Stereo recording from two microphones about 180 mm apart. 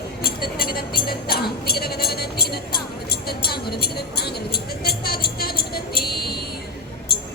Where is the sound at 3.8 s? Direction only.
60° left (ahead or behind).